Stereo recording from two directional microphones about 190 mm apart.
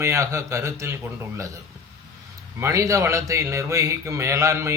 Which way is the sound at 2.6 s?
15° right (ahead or behind).